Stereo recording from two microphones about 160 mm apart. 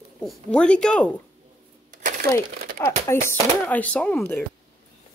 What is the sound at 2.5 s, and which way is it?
Typing, 70° right (ahead or behind).